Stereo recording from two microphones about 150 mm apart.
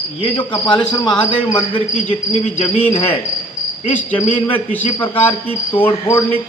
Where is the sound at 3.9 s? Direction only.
10° left (ahead or behind).